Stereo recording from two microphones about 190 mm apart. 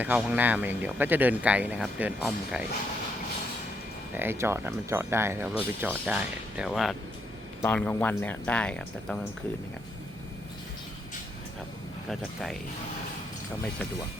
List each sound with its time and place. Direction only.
0.0 s speech: 5° right (ahead or behind)
4.1 s speech: 10° right (ahead or behind); by 9.1 s 5° left (ahead or behind)
12.0 s speech: centre (ahead or behind)